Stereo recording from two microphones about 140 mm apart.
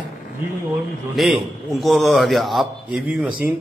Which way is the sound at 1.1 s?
Centre (ahead or behind).